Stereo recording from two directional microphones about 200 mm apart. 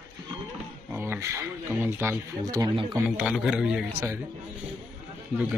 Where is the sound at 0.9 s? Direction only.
10° right (ahead or behind).